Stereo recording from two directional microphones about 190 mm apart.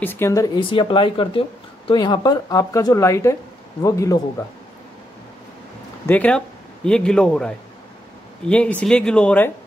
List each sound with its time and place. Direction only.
0.0 s speech: 10° left (ahead or behind)
0.7 s speech: 25° left (ahead or behind)
6.0 s a man's voice: 5° left (ahead or behind)